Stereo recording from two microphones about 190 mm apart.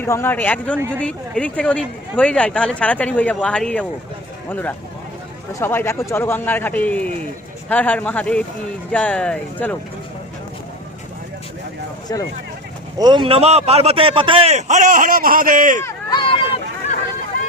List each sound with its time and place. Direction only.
0.0 s speech: 10° left (ahead or behind)
12.1 s speech: 15° left (ahead or behind)
13.0 s a man's voice: 25° right (ahead or behind); by 15.8 s 45° right (ahead or behind)
15.8 s run: 20° left (ahead or behind)